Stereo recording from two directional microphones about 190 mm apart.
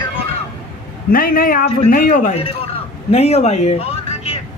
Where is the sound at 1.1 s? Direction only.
50° left (ahead or behind).